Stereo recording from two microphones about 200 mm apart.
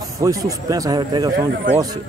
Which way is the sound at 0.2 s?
15° right (ahead or behind).